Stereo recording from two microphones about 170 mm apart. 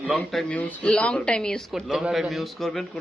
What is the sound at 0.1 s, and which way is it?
A woman's voice, centre (ahead or behind).